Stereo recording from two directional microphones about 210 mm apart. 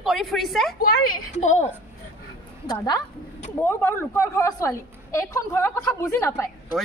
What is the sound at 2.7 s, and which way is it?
A woman's voice, 20° left (ahead or behind).